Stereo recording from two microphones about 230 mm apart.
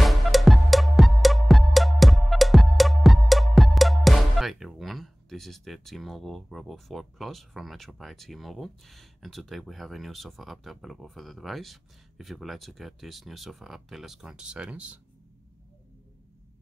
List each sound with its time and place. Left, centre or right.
0.0 s music: centre